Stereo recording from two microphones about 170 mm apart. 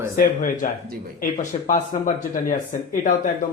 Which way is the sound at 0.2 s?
50° left (ahead or behind).